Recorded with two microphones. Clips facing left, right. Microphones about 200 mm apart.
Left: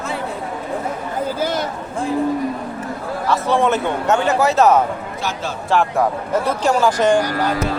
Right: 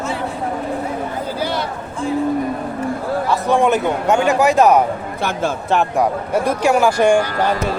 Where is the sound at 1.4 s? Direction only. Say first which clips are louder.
Even; 45° left (ahead or behind).